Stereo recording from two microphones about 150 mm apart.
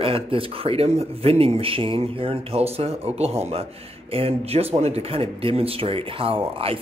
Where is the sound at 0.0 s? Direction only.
40° right (ahead or behind).